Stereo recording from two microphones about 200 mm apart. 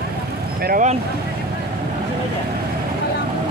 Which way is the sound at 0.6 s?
40° right (ahead or behind).